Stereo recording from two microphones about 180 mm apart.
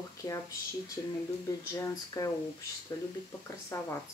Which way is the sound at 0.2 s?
25° left (ahead or behind).